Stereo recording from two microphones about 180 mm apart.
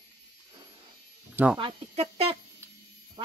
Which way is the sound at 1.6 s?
35° right (ahead or behind).